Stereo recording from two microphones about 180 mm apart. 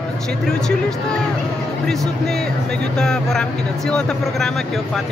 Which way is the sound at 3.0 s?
5° left (ahead or behind).